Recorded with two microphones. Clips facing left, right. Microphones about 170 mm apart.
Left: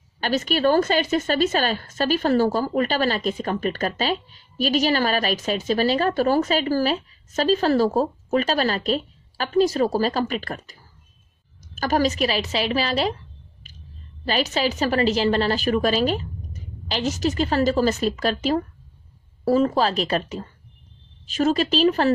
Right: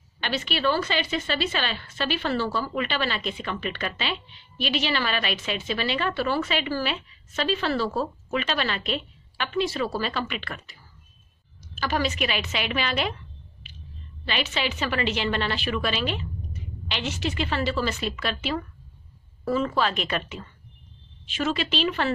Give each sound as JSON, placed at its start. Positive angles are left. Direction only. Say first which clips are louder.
{"t": 0.2, "sound": "a woman's voice", "louder": "left 6 dB", "side_deg": 40}